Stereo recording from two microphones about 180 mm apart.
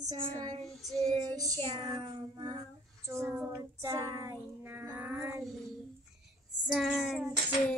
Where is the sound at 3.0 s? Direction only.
15° right (ahead or behind).